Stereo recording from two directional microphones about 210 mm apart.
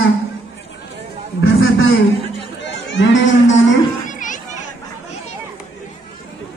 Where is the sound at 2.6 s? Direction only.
60° left (ahead or behind).